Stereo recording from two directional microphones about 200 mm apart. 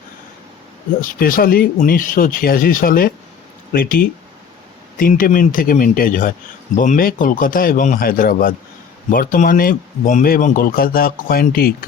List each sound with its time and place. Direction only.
1.0 s speech: 45° left (ahead or behind)